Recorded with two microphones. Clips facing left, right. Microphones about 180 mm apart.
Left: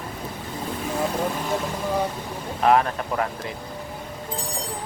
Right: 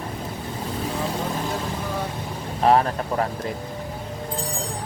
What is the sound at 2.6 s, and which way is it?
Speech, 30° right (ahead or behind).